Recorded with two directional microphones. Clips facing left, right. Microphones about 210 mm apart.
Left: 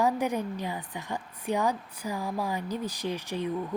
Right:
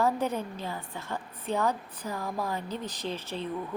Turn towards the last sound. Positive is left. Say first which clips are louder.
# left 3 dB
turn(degrees=15)  # may be behind; listen again after turning